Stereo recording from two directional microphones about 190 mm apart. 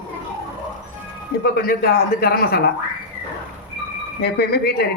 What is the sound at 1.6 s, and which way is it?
Speech, 50° left (ahead or behind).